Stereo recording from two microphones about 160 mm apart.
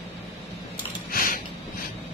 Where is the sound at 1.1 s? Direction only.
65° left (ahead or behind).